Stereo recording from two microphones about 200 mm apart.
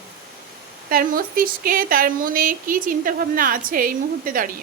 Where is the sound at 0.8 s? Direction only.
45° right (ahead or behind).